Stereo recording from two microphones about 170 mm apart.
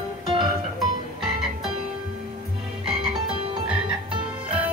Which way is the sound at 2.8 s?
5° right (ahead or behind).